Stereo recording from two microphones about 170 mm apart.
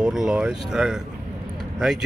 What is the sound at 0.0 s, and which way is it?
Speech, 5° right (ahead or behind).